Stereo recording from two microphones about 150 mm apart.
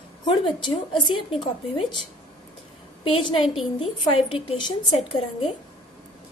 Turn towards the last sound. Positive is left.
turn(degrees=40)  # may be behind; listen again after turning